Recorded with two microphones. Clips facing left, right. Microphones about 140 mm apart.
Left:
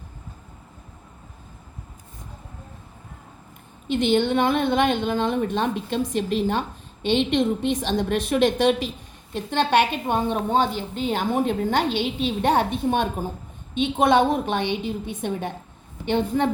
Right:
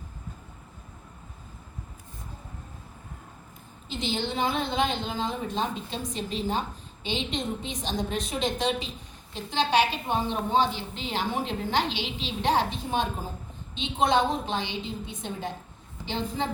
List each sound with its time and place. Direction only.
3.8 s a woman's voice: 60° left (ahead or behind)